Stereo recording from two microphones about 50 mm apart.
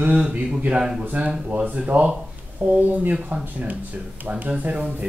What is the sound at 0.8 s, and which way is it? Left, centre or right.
Speech, centre.